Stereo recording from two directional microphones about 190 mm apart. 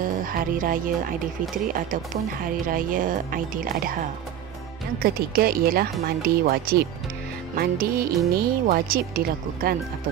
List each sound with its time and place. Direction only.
0.0 s music: 45° right (ahead or behind)
2.7 s a woman's voice: 45° right (ahead or behind)